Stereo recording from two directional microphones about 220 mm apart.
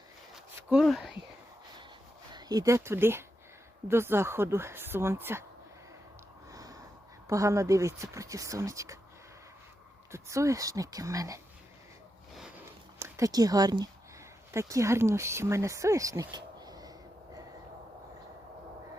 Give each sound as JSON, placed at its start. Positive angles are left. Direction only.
{"t": 0.5, "sound": "a sound", "side_deg": 0}
{"t": 2.3, "sound": "speech", "side_deg": -20}
{"t": 6.5, "sound": "snort", "side_deg": -15}
{"t": 7.3, "sound": "speech", "side_deg": -15}
{"t": 10.1, "sound": "speech", "side_deg": -15}
{"t": 12.4, "sound": "a sound", "side_deg": -10}
{"t": 14.5, "sound": "speech", "side_deg": -15}